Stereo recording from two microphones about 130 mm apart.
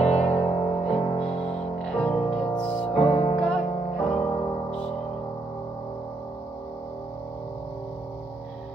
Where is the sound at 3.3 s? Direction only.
5° left (ahead or behind).